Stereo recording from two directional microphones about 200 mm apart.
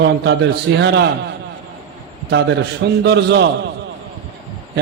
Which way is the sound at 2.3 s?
60° right (ahead or behind).